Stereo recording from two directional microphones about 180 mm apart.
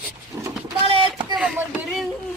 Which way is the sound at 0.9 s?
30° right (ahead or behind).